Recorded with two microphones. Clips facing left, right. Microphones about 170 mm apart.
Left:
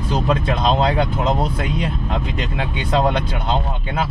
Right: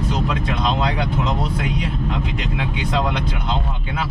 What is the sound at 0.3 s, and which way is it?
Speech, 30° left (ahead or behind).